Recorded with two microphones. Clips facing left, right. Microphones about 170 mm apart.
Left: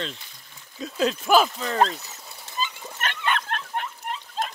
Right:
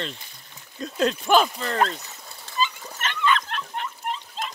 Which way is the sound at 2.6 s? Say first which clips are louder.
Right 3 dB; 55° left (ahead or behind).